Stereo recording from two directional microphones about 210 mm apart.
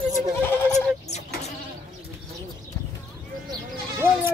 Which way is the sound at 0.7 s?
30° left (ahead or behind).